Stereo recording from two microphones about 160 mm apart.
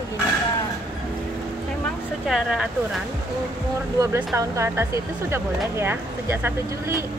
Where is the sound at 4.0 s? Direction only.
15° right (ahead or behind).